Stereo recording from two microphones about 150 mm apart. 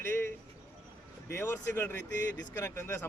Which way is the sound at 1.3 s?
15° left (ahead or behind).